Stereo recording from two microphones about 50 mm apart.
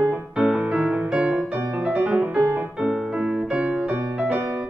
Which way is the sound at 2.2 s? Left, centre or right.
Right.